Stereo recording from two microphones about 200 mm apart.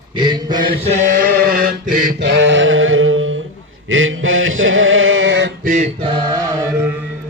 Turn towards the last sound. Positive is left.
turn(degrees=-15)  # may be behind; listen again after turning